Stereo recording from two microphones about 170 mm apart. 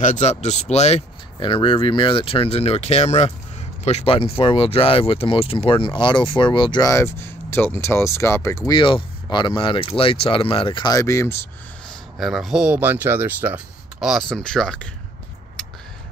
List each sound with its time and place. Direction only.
0.0 s speech: 45° left (ahead or behind); by 8.7 s 20° left (ahead or behind)
8.7 s speech: 30° left (ahead or behind)
12.2 s speech: centre (ahead or behind)